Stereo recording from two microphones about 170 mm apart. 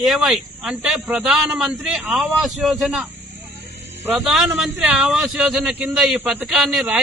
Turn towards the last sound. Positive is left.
turn(degrees=0)  # may be behind; listen again after turning